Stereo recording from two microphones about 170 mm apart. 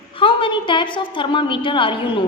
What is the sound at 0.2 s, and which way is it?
A woman's voice, 30° left (ahead or behind).